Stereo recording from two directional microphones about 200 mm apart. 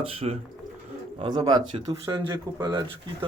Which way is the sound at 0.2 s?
30° right (ahead or behind).